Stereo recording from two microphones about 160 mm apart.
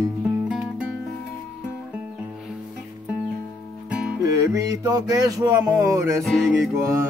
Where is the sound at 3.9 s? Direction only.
5° right (ahead or behind).